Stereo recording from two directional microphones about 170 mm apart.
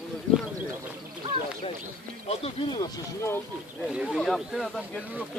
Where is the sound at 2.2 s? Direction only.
35° left (ahead or behind).